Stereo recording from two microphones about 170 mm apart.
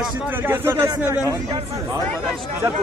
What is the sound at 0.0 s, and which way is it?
Speech, 10° right (ahead or behind).